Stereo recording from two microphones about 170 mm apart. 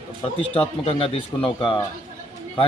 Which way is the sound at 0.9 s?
35° left (ahead or behind).